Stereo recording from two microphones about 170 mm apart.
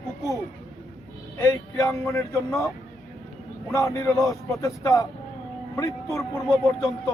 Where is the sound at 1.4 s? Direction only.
20° left (ahead or behind).